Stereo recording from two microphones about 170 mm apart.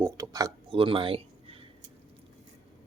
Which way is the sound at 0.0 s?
20° right (ahead or behind).